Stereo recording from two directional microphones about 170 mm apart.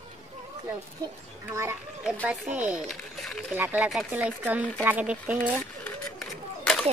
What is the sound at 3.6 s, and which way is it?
Speech, 10° right (ahead or behind).